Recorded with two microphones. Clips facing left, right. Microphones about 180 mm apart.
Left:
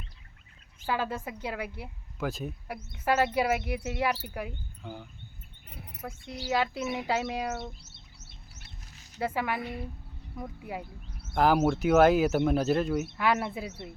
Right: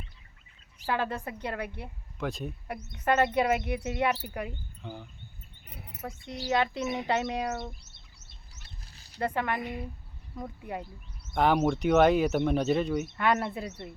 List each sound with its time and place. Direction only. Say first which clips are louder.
0.9 s speech: right 1 dB; centre (ahead or behind)
8.9 s a sound: left 2 dB; 35° right (ahead or behind)
9.2 s speech: right 1 dB; 5° left (ahead or behind)